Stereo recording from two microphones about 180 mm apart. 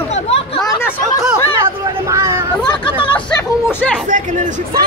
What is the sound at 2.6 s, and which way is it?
Hubbub, 25° left (ahead or behind).